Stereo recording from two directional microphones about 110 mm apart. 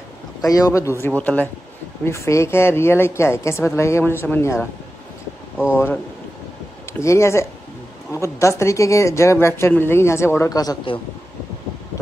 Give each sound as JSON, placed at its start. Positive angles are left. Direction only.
{"t": 0.4, "sound": "speech", "side_deg": 30}
{"t": 1.0, "sound": "speech", "side_deg": 15}
{"t": 2.0, "sound": "speech", "side_deg": 25}
{"t": 6.9, "sound": "speech", "side_deg": 25}